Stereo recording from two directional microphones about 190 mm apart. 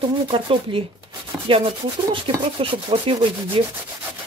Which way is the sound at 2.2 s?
25° right (ahead or behind).